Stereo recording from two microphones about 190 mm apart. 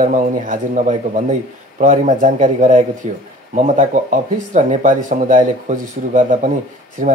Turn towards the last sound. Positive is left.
turn(degrees=-45)  # may be behind; listen again after turning